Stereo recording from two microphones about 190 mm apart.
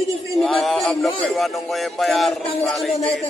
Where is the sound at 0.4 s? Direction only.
Centre (ahead or behind).